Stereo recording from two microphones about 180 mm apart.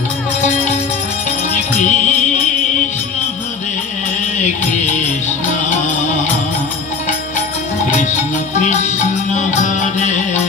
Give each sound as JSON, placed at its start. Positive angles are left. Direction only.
{"t": 1.7, "sound": "music", "side_deg": 45}
{"t": 4.4, "sound": "music", "side_deg": 40}
{"t": 8.0, "sound": "music", "side_deg": 40}